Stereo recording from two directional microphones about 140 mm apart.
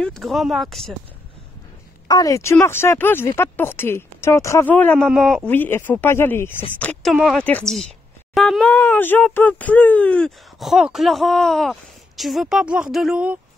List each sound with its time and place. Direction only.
0.0 s speech: centre (ahead or behind)
2.0 s speech: 25° left (ahead or behind); by 5.5 s centre (ahead or behind)
5.5 s speech: 15° left (ahead or behind); by 13.4 s 5° right (ahead or behind)